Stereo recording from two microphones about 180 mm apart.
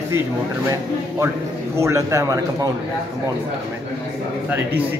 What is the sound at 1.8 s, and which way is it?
Speech, 15° right (ahead or behind).